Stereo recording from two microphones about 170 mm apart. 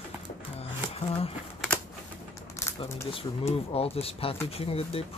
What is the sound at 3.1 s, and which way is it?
Speech, 35° left (ahead or behind).